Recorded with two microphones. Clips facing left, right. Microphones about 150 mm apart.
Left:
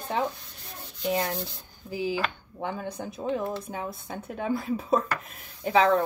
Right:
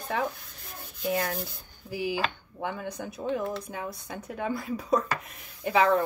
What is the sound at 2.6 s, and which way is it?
Speech, 30° left (ahead or behind).